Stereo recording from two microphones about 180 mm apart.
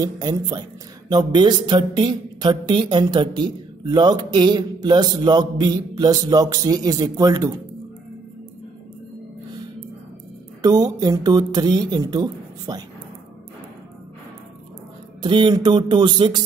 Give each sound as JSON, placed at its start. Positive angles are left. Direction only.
{"t": 0.0, "sound": "speech", "side_deg": -20}
{"t": 10.6, "sound": "speech", "side_deg": -20}
{"t": 15.2, "sound": "speech", "side_deg": -25}